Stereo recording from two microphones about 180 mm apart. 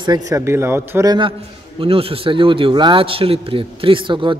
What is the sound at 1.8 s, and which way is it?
A man's voice, 30° right (ahead or behind).